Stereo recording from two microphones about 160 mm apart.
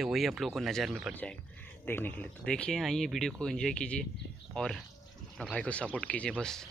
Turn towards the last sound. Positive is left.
turn(degrees=5)  # may be behind; listen again after turning